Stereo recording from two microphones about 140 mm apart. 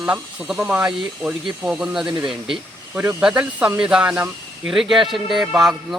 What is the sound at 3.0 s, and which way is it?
Speech, 15° right (ahead or behind).